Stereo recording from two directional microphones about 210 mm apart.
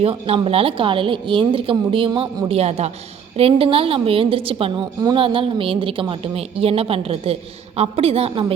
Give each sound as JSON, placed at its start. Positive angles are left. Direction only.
{"t": 0.0, "sound": "a woman's voice", "side_deg": -25}